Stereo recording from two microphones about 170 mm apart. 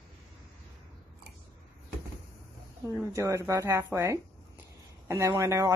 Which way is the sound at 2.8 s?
15° right (ahead or behind).